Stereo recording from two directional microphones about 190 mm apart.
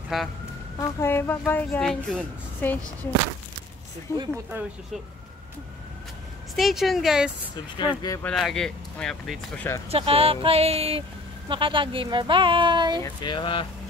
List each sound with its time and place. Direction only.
0.1 s speech: centre (ahead or behind)
0.7 s speech: 10° left (ahead or behind)
4.1 s speech: 15° left (ahead or behind)
6.5 s speech: centre (ahead or behind)
7.7 s speech: 20° left (ahead or behind)
8.2 s speech: 5° left (ahead or behind)
9.8 s speech: 30° right (ahead or behind)
13.0 s speech: 25° left (ahead or behind)